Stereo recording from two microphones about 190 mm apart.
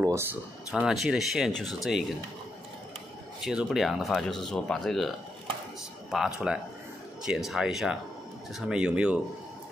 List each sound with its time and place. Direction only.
0.0 s a sound: 15° right (ahead or behind)
0.7 s speech: 5° right (ahead or behind)
3.4 s speech: centre (ahead or behind)